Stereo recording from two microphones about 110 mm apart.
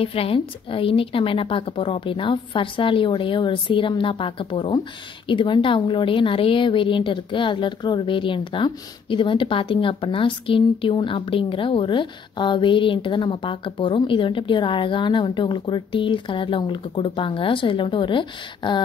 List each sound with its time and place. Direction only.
0.0 s a woman's voice: 60° left (ahead or behind)